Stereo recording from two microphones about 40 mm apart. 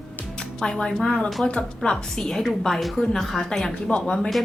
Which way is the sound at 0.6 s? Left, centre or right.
Left.